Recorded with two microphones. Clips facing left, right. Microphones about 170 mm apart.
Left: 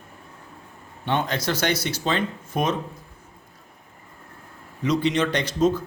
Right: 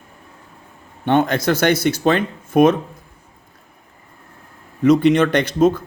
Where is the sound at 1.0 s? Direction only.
55° right (ahead or behind).